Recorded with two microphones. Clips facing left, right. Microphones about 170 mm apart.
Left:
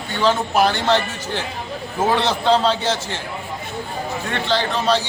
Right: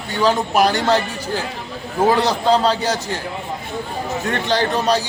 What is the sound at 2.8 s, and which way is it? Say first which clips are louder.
Speech: right 1 dB; 40° right (ahead or behind).